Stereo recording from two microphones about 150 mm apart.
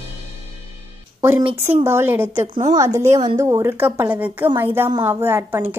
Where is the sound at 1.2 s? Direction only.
15° right (ahead or behind).